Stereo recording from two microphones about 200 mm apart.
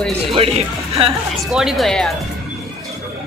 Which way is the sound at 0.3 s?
30° right (ahead or behind).